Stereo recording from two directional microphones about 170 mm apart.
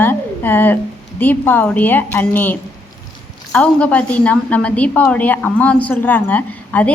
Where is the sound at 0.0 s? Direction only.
10° left (ahead or behind).